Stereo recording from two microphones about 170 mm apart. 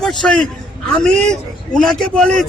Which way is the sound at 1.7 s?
5° left (ahead or behind).